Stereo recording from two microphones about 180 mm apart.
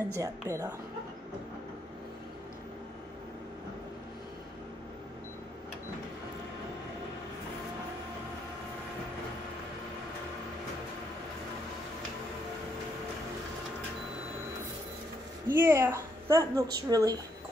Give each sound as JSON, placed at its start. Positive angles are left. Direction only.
{"t": 0.2, "sound": "a woman's voice", "side_deg": -15}
{"t": 15.4, "sound": "speech", "side_deg": -10}